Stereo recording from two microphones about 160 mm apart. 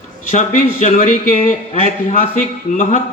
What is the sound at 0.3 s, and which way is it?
A man's voice, 50° left (ahead or behind).